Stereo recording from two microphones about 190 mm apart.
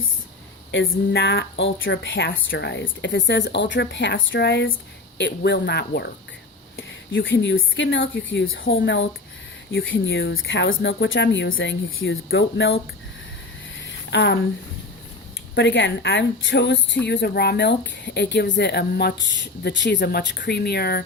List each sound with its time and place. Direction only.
0.7 s speech: 80° left
2.5 s a woman's voice: 65° left (ahead or behind)
6.7 s speech: 85° left
8.7 s speech: 70° left (ahead or behind)
14.1 s a woman's voice: 65° left (ahead or behind)
15.5 s a woman's voice: 75° left (ahead or behind); by 21.0 s 55° left (ahead or behind)